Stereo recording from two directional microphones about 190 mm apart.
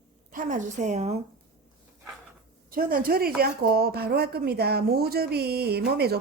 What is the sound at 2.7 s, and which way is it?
A woman's voice, 50° right (ahead or behind).